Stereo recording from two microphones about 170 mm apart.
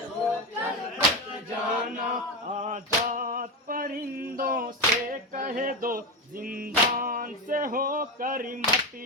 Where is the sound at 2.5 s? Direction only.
45° right (ahead or behind).